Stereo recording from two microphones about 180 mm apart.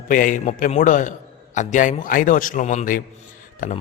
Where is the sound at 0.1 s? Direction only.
50° left (ahead or behind).